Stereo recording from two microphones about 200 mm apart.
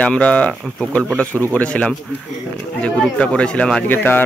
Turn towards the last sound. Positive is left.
turn(degrees=10)  # may be behind; listen again after turning